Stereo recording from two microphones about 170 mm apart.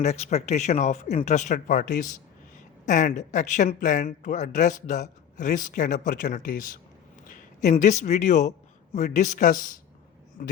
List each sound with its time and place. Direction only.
0.0 s a man's voice: 40° left (ahead or behind)